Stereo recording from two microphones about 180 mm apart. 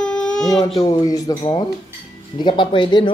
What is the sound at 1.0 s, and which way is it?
Speech, 20° left (ahead or behind).